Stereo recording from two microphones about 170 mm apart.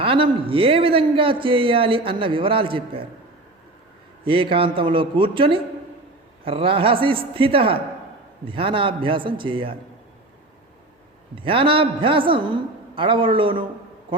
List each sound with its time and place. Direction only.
0.0 s a man's voice: 30° right (ahead or behind)
4.2 s a man's voice: 30° right (ahead or behind)
11.3 s a man's voice: 30° right (ahead or behind)